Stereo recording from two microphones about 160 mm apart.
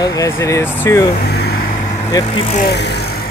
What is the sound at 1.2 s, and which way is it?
Vehicle, 80° left.